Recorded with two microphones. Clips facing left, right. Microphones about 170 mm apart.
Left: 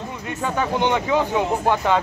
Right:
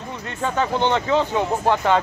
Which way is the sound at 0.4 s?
10° left (ahead or behind).